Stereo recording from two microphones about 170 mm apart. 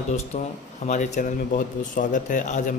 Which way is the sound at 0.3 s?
45° left (ahead or behind).